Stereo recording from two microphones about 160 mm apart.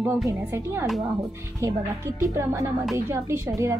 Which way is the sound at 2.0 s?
20° right (ahead or behind).